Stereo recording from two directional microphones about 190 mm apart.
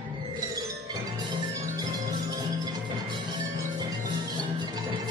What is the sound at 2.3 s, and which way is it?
Music, 20° right (ahead or behind).